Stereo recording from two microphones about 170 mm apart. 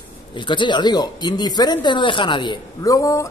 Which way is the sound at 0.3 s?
30° left (ahead or behind).